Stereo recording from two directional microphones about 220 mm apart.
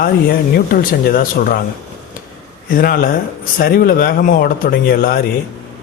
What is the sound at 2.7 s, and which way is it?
Speech, 40° left (ahead or behind).